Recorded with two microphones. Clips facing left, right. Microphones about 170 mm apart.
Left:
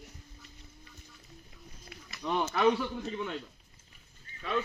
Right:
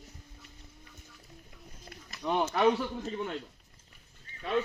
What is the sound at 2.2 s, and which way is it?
Speech, 10° right (ahead or behind).